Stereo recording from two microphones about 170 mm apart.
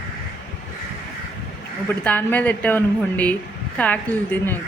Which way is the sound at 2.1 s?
10° left (ahead or behind).